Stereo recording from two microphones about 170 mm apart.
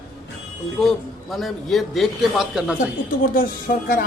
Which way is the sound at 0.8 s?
Centre (ahead or behind).